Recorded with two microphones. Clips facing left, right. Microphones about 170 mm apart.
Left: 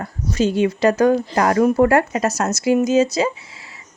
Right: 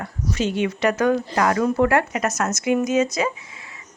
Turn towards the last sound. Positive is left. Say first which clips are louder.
# left 4 dB
turn(degrees=30)  # may be behind; listen again after turning